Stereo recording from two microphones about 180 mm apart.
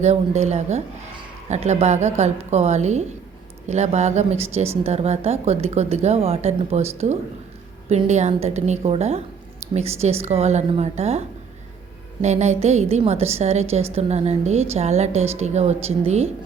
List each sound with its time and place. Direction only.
0.0 s speech: 40° right (ahead or behind)